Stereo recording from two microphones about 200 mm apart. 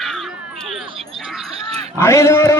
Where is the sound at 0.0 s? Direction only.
Centre (ahead or behind).